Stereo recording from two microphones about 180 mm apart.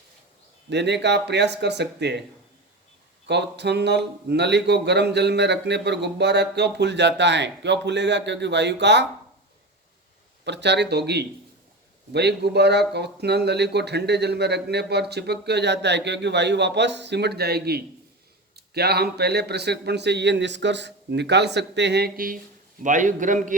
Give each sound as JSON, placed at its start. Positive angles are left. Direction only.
{"t": 0.7, "sound": "speech", "side_deg": -70}
{"t": 3.2, "sound": "speech", "side_deg": -70}
{"t": 10.4, "sound": "a man's voice", "side_deg": -75}